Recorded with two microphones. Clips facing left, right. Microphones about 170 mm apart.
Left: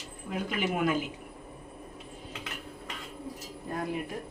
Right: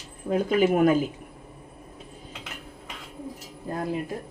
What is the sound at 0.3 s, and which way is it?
Speech, 40° right (ahead or behind).